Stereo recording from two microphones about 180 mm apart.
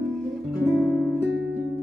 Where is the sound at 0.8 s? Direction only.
5° right (ahead or behind).